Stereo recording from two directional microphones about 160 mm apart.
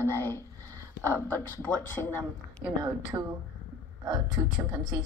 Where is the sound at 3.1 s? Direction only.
20° right (ahead or behind).